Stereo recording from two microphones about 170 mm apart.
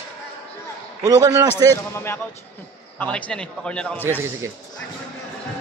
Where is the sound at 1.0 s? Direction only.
20° right (ahead or behind).